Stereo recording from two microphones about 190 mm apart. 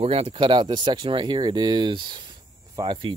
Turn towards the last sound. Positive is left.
turn(degrees=-25)  # may be behind; listen again after turning